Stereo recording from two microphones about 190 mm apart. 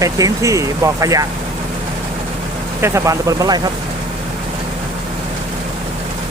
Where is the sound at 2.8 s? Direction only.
15° right (ahead or behind).